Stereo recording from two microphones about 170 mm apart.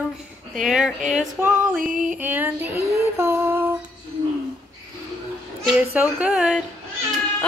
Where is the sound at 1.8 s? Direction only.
50° right (ahead or behind).